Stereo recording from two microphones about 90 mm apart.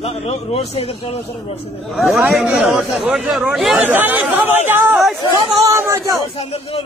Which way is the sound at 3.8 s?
20° right (ahead or behind).